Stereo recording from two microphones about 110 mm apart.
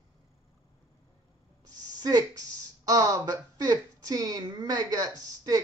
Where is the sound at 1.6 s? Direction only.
35° right (ahead or behind).